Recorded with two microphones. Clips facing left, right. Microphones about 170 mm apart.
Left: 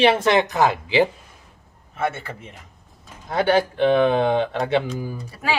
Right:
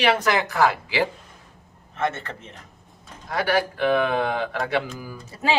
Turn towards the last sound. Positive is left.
turn(degrees=-25)  # may be behind; listen again after turning